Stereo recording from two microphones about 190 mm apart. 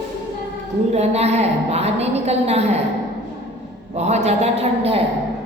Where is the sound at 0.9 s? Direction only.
35° right (ahead or behind).